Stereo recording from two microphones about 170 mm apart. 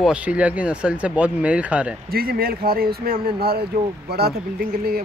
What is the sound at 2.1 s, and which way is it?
Speech, 60° right (ahead or behind).